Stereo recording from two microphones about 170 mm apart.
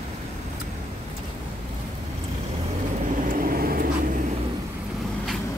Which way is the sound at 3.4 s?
60° right (ahead or behind).